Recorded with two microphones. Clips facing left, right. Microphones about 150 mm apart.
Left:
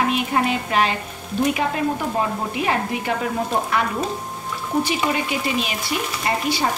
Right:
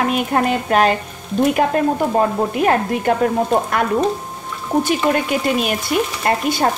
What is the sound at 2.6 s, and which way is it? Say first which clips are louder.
A woman's voice: right 6 dB; 50° right (ahead or behind).